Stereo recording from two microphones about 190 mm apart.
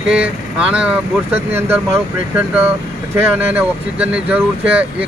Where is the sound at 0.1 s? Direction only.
5° right (ahead or behind).